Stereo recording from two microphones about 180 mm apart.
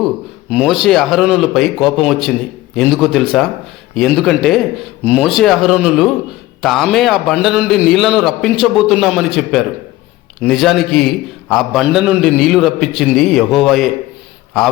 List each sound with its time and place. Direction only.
0.5 s a man's voice: centre (ahead or behind)